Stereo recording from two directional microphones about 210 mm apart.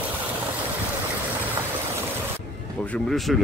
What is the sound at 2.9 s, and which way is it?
Speech, centre (ahead or behind).